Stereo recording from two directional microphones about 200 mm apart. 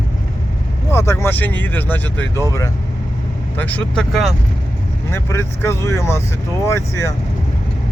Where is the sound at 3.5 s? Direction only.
5° left (ahead or behind).